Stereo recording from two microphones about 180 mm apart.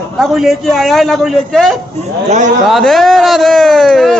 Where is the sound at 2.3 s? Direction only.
40° right (ahead or behind).